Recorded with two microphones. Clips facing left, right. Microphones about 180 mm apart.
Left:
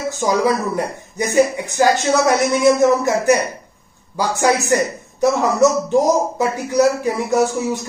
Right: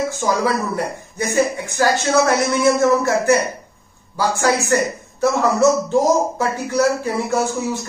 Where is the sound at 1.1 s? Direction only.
15° left (ahead or behind).